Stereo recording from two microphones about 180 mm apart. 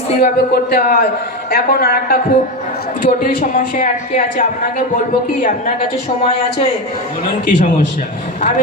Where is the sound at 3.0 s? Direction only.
50° left (ahead or behind).